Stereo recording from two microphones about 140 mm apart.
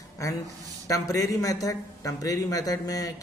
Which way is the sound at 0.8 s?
25° left (ahead or behind).